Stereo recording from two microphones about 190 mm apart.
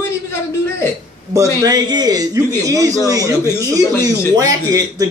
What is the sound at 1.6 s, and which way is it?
A man's voice, 20° right (ahead or behind).